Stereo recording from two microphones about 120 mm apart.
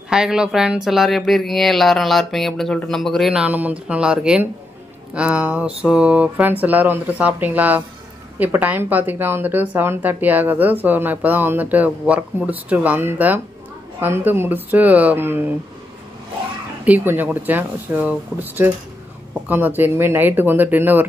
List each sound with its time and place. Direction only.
0.1 s speech: 5° right (ahead or behind)
16.8 s speech: 15° right (ahead or behind)